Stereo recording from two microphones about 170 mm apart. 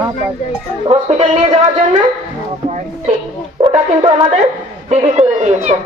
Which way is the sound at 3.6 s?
30° right (ahead or behind).